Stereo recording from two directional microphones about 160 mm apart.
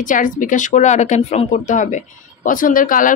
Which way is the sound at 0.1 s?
55° left (ahead or behind).